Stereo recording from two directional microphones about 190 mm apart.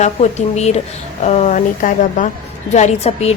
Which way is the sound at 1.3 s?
35° left (ahead or behind).